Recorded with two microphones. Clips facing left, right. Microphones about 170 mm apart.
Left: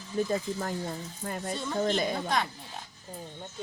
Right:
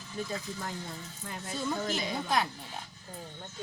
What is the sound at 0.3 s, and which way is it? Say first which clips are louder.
Speech: left 7 dB; 45° left (ahead or behind).